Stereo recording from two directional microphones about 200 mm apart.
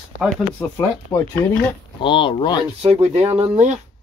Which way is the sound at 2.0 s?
25° left (ahead or behind).